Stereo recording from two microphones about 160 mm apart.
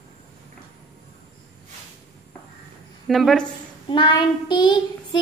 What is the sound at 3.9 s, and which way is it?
A child's voice, 30° left (ahead or behind).